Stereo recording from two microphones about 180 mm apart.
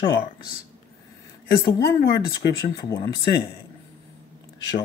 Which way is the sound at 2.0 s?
55° left (ahead or behind).